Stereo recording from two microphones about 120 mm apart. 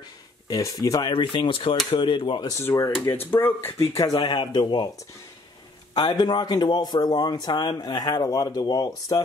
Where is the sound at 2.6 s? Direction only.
25° left (ahead or behind).